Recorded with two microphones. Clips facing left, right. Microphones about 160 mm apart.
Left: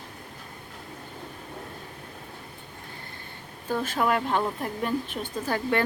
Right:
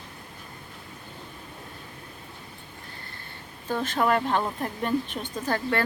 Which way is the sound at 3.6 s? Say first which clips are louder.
Right 1 dB; 10° left (ahead or behind).